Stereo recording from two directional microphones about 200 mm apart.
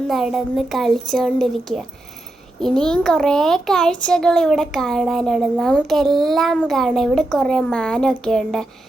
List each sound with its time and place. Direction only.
0.1 s a child's voice: centre (ahead or behind)